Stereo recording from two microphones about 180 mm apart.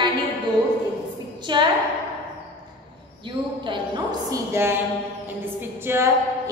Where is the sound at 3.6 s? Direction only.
20° right (ahead or behind).